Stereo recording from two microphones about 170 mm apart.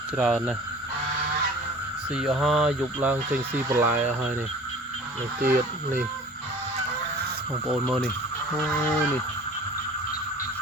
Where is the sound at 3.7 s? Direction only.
15° right (ahead or behind).